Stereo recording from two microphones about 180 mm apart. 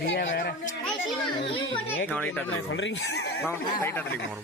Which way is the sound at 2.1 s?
5° left (ahead or behind).